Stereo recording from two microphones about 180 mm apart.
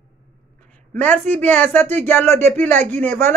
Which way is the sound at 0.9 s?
10° left (ahead or behind).